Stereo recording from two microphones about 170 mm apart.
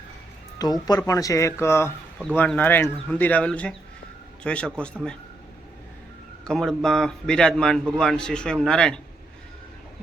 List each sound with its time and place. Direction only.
0.6 s a man's voice: 20° left (ahead or behind); by 4.9 s 5° left (ahead or behind)
6.4 s a man's voice: centre (ahead or behind)